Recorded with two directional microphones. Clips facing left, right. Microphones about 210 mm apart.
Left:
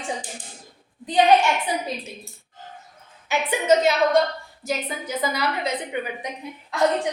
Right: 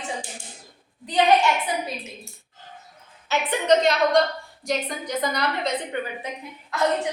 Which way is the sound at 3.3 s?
10° left (ahead or behind).